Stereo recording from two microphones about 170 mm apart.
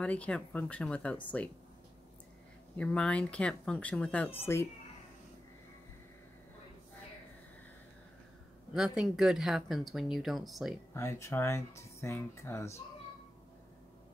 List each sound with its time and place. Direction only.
0.0 s speech: 5° left (ahead or behind)
2.8 s speech: 5° left (ahead or behind)
8.7 s speech: 5° right (ahead or behind)
10.9 s speech: 15° left (ahead or behind)